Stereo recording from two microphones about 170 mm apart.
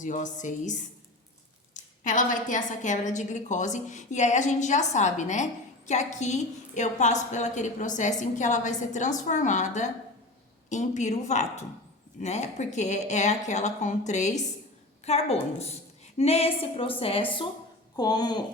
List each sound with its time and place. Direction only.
0.0 s a woman's voice: 50° left (ahead or behind)
17.9 s speech: 25° left (ahead or behind)